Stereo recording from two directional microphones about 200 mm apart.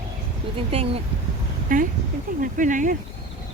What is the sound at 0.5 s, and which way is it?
Speech, 30° right (ahead or behind).